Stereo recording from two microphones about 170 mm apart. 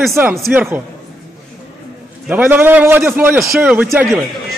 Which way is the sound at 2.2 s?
10° right (ahead or behind).